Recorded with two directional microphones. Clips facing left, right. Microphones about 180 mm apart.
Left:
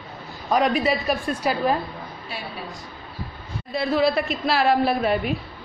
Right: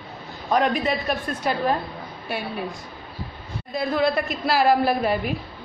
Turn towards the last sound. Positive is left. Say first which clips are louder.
# left 1 dB
turn(degrees=-5)  # may be behind; listen again after turning